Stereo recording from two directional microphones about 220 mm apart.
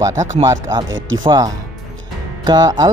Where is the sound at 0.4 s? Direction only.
20° right (ahead or behind).